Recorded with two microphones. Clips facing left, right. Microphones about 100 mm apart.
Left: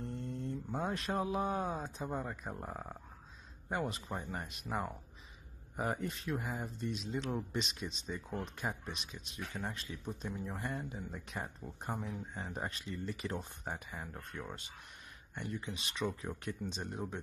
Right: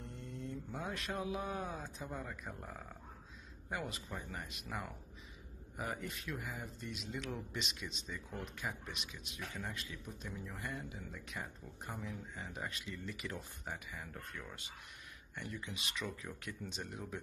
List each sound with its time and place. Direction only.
0.0 s speech: 40° left (ahead or behind)